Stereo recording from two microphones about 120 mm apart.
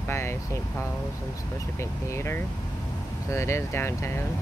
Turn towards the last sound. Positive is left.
turn(degrees=20)  # may be behind; listen again after turning